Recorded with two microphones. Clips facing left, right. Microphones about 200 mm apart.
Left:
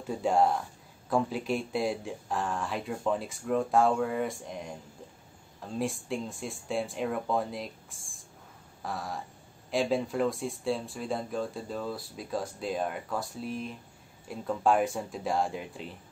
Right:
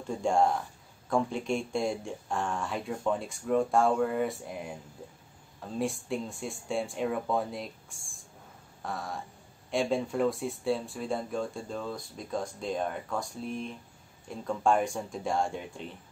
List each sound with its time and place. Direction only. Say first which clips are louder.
0.0 s speech: even; 5° left (ahead or behind)